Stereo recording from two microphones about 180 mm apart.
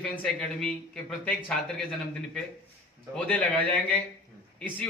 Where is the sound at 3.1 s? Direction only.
5° left (ahead or behind).